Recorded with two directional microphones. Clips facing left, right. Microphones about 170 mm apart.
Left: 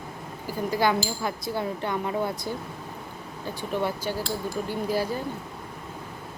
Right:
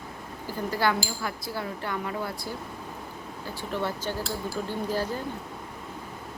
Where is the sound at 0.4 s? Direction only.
15° left (ahead or behind).